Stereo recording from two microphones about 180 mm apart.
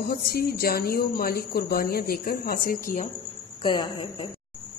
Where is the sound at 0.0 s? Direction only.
55° left (ahead or behind).